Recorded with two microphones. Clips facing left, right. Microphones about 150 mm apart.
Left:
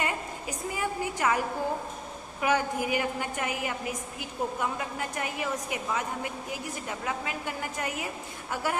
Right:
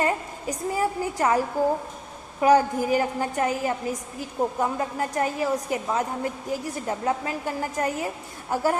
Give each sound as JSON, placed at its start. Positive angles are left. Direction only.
{"t": 0.0, "sound": "a woman's voice", "side_deg": -40}
{"t": 2.4, "sound": "a woman's voice", "side_deg": -35}